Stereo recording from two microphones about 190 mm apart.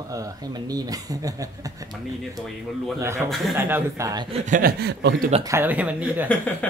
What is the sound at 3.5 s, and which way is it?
Speech, 15° right (ahead or behind).